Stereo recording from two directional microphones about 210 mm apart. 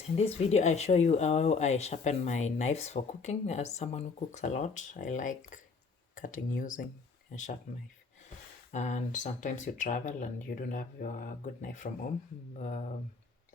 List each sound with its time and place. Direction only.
0.2 s speech: 30° left (ahead or behind)
8.7 s speech: 35° left (ahead or behind)